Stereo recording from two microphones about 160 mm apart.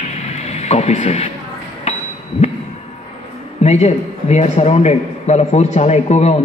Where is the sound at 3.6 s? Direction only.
45° left (ahead or behind).